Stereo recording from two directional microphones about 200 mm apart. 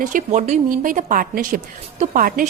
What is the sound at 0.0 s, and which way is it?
A woman's voice, 40° right (ahead or behind).